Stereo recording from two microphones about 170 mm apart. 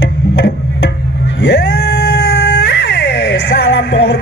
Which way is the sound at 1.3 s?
85° left.